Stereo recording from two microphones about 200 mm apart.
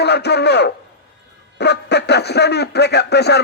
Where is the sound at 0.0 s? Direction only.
55° left (ahead or behind).